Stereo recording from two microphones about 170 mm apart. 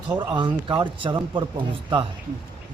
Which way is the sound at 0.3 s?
25° right (ahead or behind).